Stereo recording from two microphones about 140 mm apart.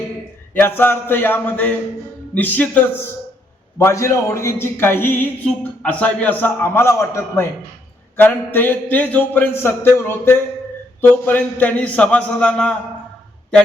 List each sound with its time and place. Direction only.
0.5 s speech: 15° left (ahead or behind)